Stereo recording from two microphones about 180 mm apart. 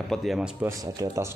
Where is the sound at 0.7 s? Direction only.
20° right (ahead or behind).